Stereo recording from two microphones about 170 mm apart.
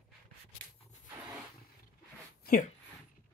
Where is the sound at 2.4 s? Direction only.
60° left (ahead or behind).